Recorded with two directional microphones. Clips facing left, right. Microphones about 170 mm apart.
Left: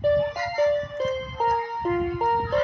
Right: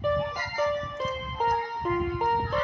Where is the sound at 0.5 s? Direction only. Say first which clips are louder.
Left 6 dB; 40° left (ahead or behind).